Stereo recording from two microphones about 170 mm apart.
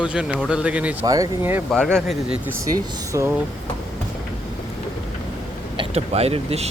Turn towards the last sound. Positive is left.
turn(degrees=-35)  # may be behind; listen again after turning